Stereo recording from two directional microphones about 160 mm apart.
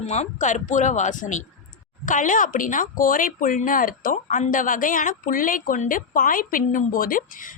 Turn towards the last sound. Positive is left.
turn(degrees=60)  # may be behind; listen again after turning